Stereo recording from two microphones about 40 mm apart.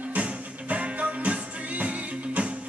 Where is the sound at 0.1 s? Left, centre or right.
Right.